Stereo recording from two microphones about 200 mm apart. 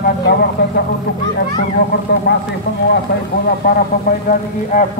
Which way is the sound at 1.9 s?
55° left (ahead or behind).